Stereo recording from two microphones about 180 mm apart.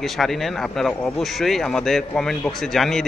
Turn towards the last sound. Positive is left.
turn(degrees=0)  # may be behind; listen again after turning